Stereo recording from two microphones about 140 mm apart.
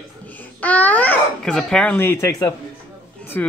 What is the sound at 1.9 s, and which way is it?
Speech, 15° left (ahead or behind).